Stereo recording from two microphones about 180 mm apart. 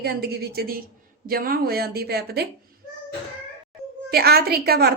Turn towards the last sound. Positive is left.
turn(degrees=-60)  # may be behind; listen again after turning